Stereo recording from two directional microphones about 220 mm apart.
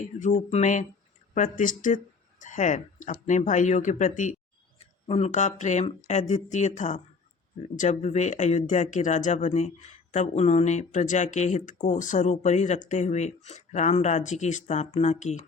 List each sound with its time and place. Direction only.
0.0 s speech: 35° left (ahead or behind)